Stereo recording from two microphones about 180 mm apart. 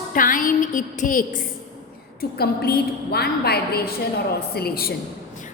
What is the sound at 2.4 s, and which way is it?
A woman's voice, 60° left (ahead or behind).